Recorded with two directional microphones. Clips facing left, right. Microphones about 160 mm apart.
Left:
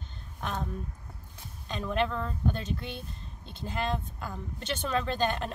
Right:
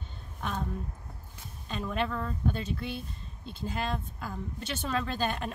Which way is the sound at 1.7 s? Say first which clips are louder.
Left 2 dB; 5° right (ahead or behind).